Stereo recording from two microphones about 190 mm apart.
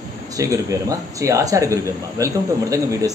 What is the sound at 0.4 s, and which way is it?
Speech, 15° right (ahead or behind).